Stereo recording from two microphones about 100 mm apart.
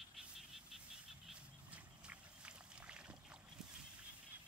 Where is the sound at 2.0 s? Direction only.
10° right (ahead or behind).